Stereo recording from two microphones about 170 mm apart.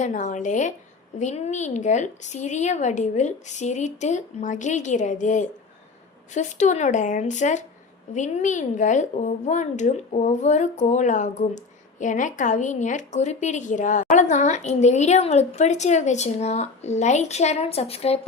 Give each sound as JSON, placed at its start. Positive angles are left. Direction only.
{"t": 0.0, "sound": "speech", "side_deg": 45}